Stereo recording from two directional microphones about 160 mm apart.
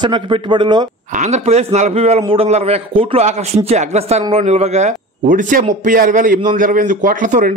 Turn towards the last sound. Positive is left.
turn(degrees=-55)  # may be behind; listen again after turning